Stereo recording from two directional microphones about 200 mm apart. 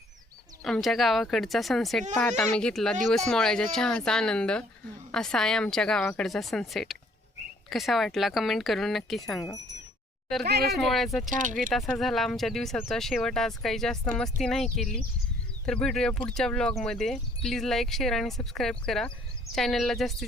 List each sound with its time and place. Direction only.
0.6 s speech: centre (ahead or behind)
10.4 s speech: 55° right (ahead or behind)
10.8 s speech: centre (ahead or behind)